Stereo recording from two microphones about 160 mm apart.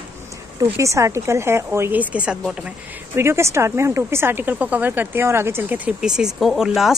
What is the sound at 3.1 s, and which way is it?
A woman's voice, 15° right (ahead or behind).